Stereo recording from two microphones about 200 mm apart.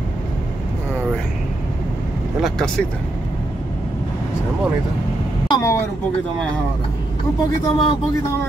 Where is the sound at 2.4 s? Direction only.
Centre (ahead or behind).